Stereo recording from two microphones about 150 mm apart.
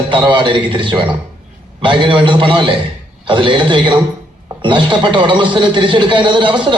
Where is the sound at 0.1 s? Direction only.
30° right (ahead or behind).